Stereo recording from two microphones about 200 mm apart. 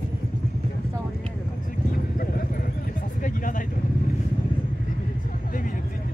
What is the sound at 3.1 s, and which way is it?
Vehicle, 40° left (ahead or behind).